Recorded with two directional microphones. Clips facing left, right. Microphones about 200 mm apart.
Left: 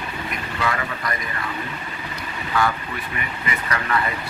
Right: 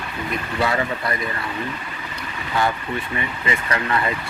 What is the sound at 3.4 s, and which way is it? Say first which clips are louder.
Speech: right 2 dB; 30° right (ahead or behind).